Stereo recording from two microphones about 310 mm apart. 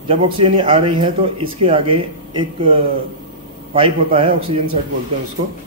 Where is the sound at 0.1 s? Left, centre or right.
Centre.